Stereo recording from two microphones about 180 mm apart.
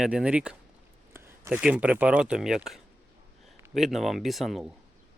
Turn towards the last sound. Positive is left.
turn(degrees=0)  # may be behind; listen again after turning